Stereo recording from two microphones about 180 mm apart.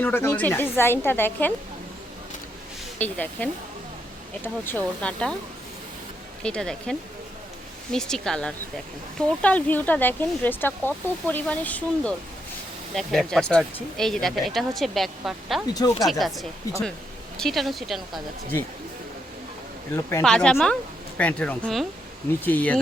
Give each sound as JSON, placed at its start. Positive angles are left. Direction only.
{"t": 0.0, "sound": "speech", "side_deg": 10}
{"t": 3.0, "sound": "speech", "side_deg": 10}
{"t": 6.4, "sound": "speech", "side_deg": 5}
{"t": 7.9, "sound": "speech", "side_deg": 5}
{"t": 15.7, "sound": "speech", "side_deg": 20}
{"t": 16.0, "sound": "speech", "side_deg": 0}
{"t": 20.2, "sound": "speech", "side_deg": 5}